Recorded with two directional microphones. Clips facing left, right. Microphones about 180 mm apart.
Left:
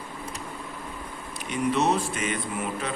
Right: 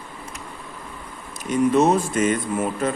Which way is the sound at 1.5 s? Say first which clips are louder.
Right 7 dB; 45° right (ahead or behind).